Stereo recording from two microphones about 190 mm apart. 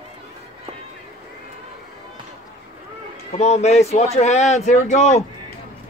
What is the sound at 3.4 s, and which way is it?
A man's voice, 35° left (ahead or behind).